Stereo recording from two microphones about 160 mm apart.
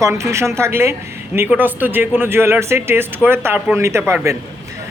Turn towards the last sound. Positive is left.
turn(degrees=-15)  # may be behind; listen again after turning